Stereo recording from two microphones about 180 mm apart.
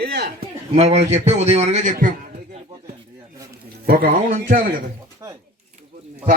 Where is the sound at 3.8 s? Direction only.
55° right (ahead or behind).